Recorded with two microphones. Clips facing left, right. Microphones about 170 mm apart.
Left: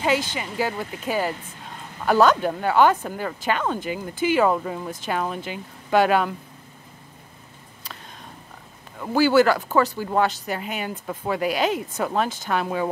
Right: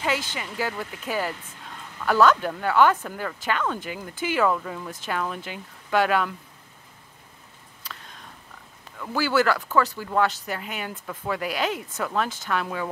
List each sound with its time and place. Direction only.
0.0 s speech: 20° left (ahead or behind)
8.9 s speech: 25° left (ahead or behind)